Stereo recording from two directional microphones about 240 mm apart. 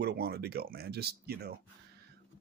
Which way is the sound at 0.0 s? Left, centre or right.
Right.